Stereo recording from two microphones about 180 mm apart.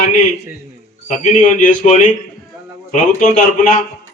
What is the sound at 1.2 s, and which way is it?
A man's voice, 45° left (ahead or behind).